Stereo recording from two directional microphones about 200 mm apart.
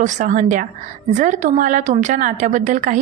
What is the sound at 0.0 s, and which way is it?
A woman's voice, 40° right (ahead or behind).